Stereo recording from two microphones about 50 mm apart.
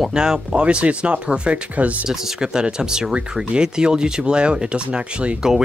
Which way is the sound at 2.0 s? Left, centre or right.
Centre.